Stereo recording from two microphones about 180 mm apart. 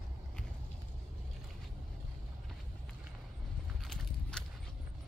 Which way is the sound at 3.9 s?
5° left (ahead or behind).